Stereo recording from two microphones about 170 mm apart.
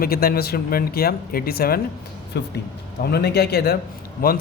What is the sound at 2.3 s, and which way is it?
A woman's voice, 80° left.